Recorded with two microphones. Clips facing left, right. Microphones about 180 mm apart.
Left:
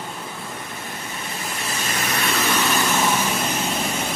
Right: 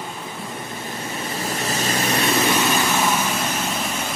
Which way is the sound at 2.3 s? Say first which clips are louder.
Right 1 dB; 15° right (ahead or behind).